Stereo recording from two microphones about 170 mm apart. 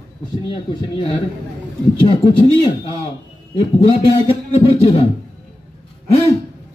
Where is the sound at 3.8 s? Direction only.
30° left (ahead or behind).